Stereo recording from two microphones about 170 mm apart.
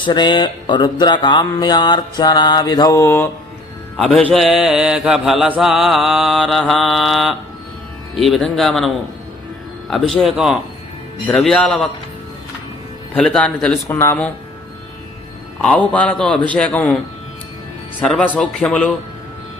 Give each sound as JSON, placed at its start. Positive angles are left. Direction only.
{"t": 0.0, "sound": "music", "side_deg": 25}
{"t": 3.9, "sound": "mantra", "side_deg": 0}
{"t": 9.9, "sound": "mantra", "side_deg": 0}
{"t": 13.1, "sound": "speech", "side_deg": 5}
{"t": 15.6, "sound": "speech", "side_deg": 5}
{"t": 18.0, "sound": "mantra", "side_deg": 5}